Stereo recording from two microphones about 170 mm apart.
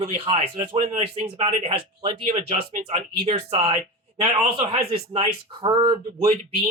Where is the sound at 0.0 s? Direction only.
40° right (ahead or behind).